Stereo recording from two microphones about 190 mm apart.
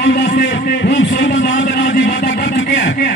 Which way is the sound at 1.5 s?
50° left (ahead or behind).